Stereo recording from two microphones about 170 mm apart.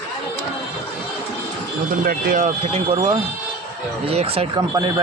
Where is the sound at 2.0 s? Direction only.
50° right (ahead or behind).